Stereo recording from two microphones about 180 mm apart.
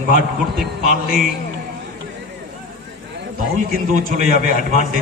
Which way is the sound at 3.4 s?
50° right (ahead or behind).